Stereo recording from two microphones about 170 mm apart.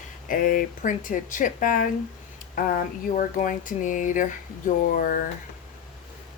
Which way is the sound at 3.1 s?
50° left (ahead or behind).